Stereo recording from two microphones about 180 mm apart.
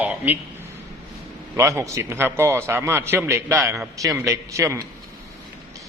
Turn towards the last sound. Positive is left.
turn(degrees=-15)  # may be behind; listen again after turning